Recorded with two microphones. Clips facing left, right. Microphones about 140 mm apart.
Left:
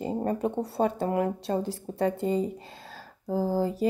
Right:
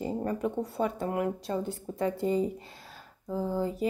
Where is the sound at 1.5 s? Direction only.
70° left (ahead or behind).